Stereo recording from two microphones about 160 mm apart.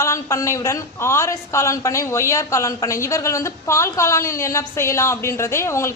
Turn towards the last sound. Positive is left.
turn(degrees=15)  # may be behind; listen again after turning